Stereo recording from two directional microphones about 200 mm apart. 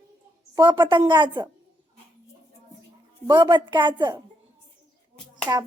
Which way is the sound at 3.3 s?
25° right (ahead or behind).